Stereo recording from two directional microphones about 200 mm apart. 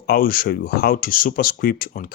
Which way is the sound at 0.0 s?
50° left (ahead or behind).